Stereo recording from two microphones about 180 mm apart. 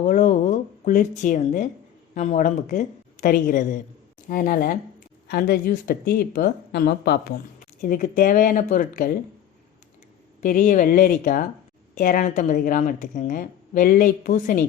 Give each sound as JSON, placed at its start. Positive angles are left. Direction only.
{"t": 0.0, "sound": "a sound", "side_deg": 45}
{"t": 2.1, "sound": "a woman's voice", "side_deg": 45}
{"t": 7.8, "sound": "a woman's voice", "side_deg": 50}
{"t": 10.4, "sound": "a woman's voice", "side_deg": 45}